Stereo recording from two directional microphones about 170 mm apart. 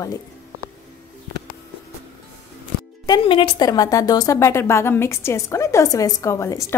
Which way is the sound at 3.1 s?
25° left (ahead or behind).